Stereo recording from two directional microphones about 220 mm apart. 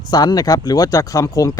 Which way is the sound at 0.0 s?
20° left (ahead or behind).